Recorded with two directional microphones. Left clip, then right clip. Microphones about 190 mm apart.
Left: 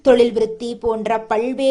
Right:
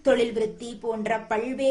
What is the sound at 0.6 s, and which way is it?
Speech, 35° left (ahead or behind).